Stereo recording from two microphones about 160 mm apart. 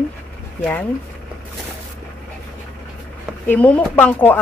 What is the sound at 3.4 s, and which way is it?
Speech, 10° left (ahead or behind).